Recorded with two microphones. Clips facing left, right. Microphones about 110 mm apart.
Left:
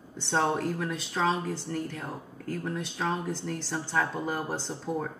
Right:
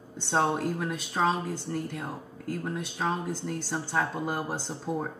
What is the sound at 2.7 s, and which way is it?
A woman's voice, 20° right (ahead or behind).